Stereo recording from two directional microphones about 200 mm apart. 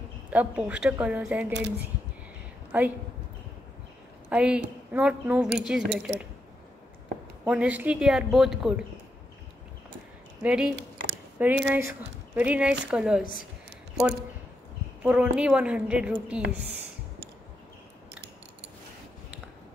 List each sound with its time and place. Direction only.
0.3 s speech: 5° right (ahead or behind)
1.5 s speech: 60° right (ahead or behind)
2.7 s speech: 10° right (ahead or behind)
4.3 s a woman's voice: 5° right (ahead or behind)
7.4 s a woman's voice: 5° right (ahead or behind)
10.4 s a woman's voice: 5° right (ahead or behind)
15.0 s a woman's voice: 5° right (ahead or behind)